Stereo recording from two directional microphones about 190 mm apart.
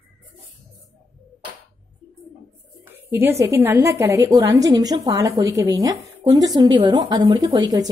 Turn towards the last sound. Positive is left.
turn(degrees=-20)  # may be behind; listen again after turning